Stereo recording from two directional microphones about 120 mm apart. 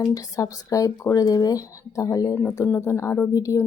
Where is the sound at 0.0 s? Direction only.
30° left (ahead or behind).